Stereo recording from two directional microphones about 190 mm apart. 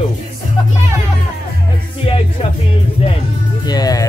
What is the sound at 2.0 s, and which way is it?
Music, 30° left (ahead or behind).